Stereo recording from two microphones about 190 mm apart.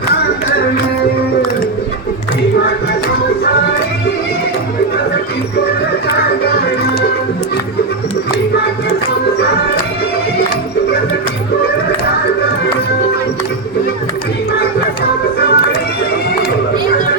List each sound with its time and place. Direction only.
15.4 s music: 60° left (ahead or behind)